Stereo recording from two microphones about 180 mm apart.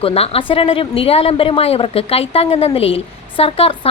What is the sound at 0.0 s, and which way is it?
Speech, 30° left (ahead or behind).